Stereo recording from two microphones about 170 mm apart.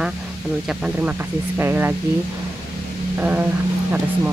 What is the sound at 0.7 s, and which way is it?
Speech, 5° right (ahead or behind).